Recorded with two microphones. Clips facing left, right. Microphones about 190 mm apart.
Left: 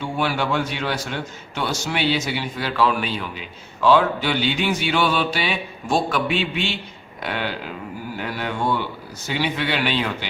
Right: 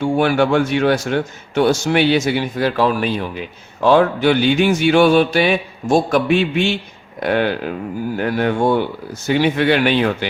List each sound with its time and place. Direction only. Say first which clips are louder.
0.0 s a man's voice: right 8 dB; 50° right (ahead or behind)